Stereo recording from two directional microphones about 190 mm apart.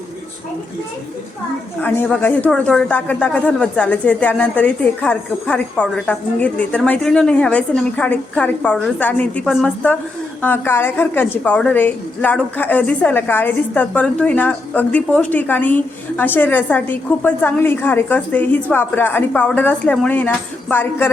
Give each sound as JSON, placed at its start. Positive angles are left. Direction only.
{"t": 1.8, "sound": "a woman's voice", "side_deg": 10}